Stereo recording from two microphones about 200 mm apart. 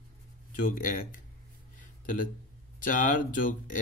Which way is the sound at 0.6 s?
45° left (ahead or behind).